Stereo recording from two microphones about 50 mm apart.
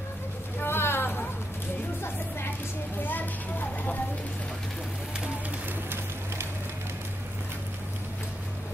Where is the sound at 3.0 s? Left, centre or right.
Left.